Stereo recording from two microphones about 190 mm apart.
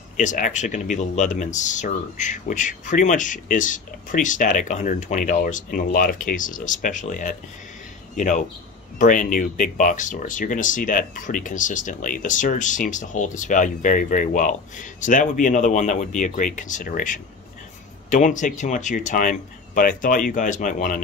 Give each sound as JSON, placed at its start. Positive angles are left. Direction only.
{"t": 0.2, "sound": "speech", "side_deg": 40}